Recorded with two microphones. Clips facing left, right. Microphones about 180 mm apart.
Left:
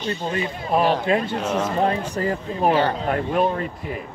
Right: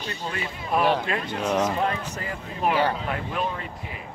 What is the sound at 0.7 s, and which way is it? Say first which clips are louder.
Speech: left 4 dB; 25° left (ahead or behind).